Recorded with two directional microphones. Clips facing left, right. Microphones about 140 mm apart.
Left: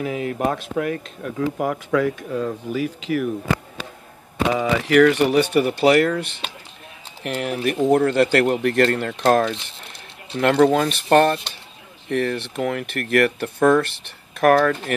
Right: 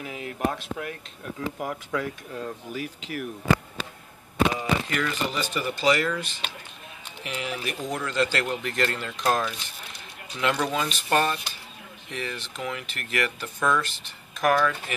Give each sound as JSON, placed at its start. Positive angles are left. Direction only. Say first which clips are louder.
{"t": 0.0, "sound": "speech", "louder": "left 7 dB", "side_deg": 75}
{"t": 4.6, "sound": "speech", "louder": "left 12 dB", "side_deg": 70}